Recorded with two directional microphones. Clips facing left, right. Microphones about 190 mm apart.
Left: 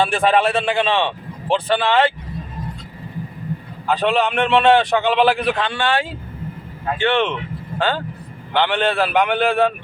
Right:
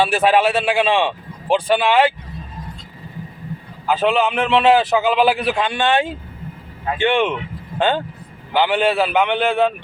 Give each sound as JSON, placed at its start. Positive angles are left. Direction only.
{"t": 0.0, "sound": "a man's voice", "side_deg": -5}
{"t": 3.8, "sound": "a man's voice", "side_deg": 0}
{"t": 5.6, "sound": "a man's voice", "side_deg": -20}
{"t": 8.5, "sound": "a man's voice", "side_deg": -5}